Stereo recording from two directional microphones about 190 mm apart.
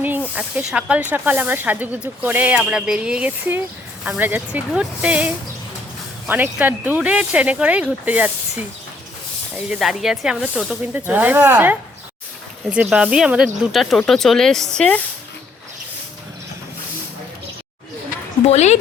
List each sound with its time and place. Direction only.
0.0 s speech: 10° right (ahead or behind)
9.6 s speech: 5° right (ahead or behind)
18.4 s a woman's voice: 35° left (ahead or behind)